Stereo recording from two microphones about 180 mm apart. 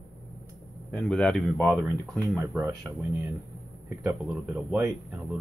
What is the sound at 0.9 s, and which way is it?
Speech, 5° left (ahead or behind).